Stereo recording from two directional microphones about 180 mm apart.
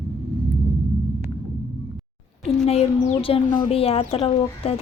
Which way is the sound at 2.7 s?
30° left (ahead or behind).